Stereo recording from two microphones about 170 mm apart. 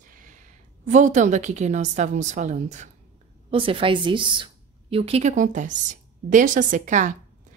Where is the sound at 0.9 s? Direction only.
45° right (ahead or behind).